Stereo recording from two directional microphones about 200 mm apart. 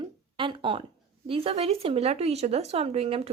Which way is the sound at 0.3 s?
25° right (ahead or behind).